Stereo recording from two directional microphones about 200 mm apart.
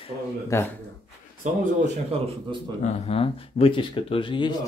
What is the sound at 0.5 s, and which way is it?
Speech, 15° left (ahead or behind).